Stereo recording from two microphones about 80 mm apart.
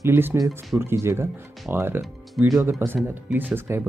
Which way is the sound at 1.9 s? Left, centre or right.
Centre.